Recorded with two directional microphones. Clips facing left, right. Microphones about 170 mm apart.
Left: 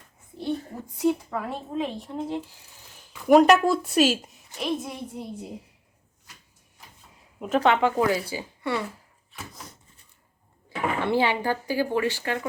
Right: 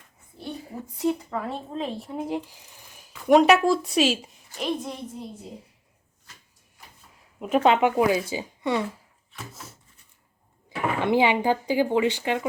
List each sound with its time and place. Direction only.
0.7 s speech: centre (ahead or behind)
3.2 s speech: centre (ahead or behind)
7.3 s speech: 5° right (ahead or behind)
7.6 s speech: 20° right (ahead or behind)
9.3 s a sound: 5° right (ahead or behind)
10.7 s speech: 15° right (ahead or behind)